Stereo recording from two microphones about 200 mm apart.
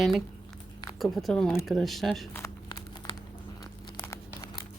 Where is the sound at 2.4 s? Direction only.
15° left (ahead or behind).